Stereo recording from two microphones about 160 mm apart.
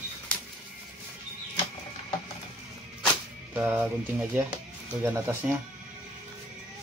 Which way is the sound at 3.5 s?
10° right (ahead or behind).